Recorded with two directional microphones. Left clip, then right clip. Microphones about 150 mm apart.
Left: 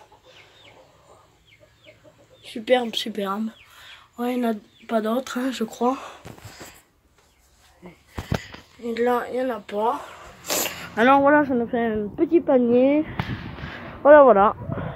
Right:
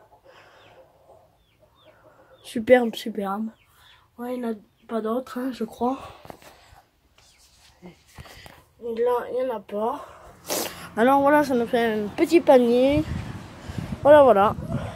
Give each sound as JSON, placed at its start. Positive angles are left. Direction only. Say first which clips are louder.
{"t": 2.4, "sound": "speech", "louder": "right 3 dB", "side_deg": -50}
{"t": 4.2, "sound": "speech", "louder": "left 5 dB", "side_deg": 10}
{"t": 8.9, "sound": "speech", "louder": "left 1 dB", "side_deg": 5}
{"t": 10.4, "sound": "a sound", "louder": "left 3 dB", "side_deg": -30}
{"t": 11.1, "sound": "a woman's voice", "louder": "left 1 dB", "side_deg": -15}
{"t": 14.0, "sound": "a sound", "louder": "left 2 dB", "side_deg": -10}